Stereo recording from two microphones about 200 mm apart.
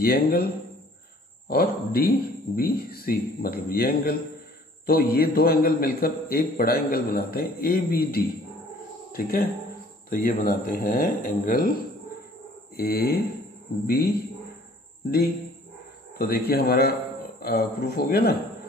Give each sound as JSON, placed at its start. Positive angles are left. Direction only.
{"t": 0.0, "sound": "a man's voice", "side_deg": 50}
{"t": 1.5, "sound": "a man's voice", "side_deg": 50}
{"t": 12.7, "sound": "a man's voice", "side_deg": 50}
{"t": 15.0, "sound": "a man's voice", "side_deg": 50}